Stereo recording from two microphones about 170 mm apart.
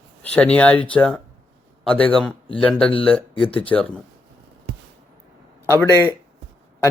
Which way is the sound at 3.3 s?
30° left (ahead or behind).